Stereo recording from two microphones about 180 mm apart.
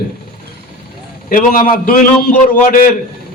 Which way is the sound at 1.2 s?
50° left (ahead or behind).